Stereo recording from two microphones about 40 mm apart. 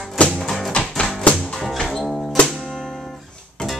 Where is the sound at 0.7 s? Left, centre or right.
Centre.